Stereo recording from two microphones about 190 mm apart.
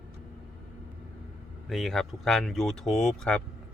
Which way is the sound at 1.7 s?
Centre (ahead or behind).